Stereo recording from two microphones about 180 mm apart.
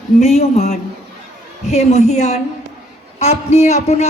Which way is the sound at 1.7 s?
40° left (ahead or behind).